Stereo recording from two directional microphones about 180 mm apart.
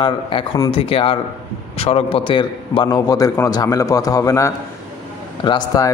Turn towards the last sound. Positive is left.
turn(degrees=20)  # may be behind; listen again after turning